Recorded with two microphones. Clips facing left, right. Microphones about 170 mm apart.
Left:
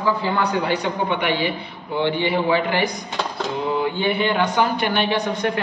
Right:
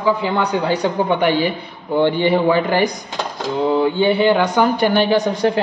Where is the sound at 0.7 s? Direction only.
40° right (ahead or behind).